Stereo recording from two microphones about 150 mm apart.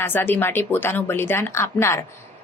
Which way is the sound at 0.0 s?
15° left (ahead or behind).